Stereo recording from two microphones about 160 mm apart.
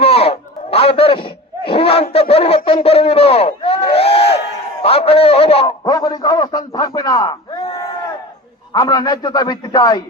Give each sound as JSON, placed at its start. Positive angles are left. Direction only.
{"t": 0.0, "sound": "a sound", "side_deg": 40}
{"t": 2.6, "sound": "a man's voice", "side_deg": 35}
{"t": 5.6, "sound": "a man's voice", "side_deg": 25}